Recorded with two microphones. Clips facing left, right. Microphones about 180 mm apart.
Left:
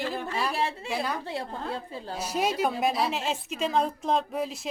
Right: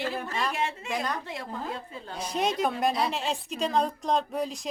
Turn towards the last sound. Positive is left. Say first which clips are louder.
# even
turn(degrees=5)  # may be behind; listen again after turning